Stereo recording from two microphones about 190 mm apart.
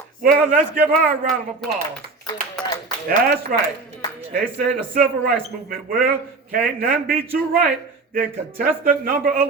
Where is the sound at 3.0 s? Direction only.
50° right (ahead or behind).